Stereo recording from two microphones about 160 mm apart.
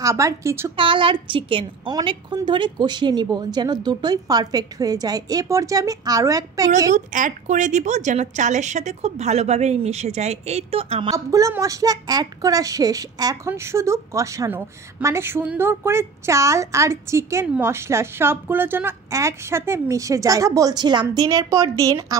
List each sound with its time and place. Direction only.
0.0 s a child's voice: 20° right (ahead or behind)
0.7 s a child's voice: 30° right (ahead or behind)
6.9 s a woman's voice: 50° right (ahead or behind)
11.1 s a child's voice: 20° right (ahead or behind)